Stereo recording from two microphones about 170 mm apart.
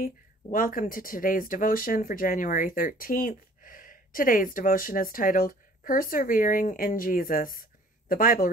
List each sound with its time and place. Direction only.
0.0 s speech: 55° left (ahead or behind)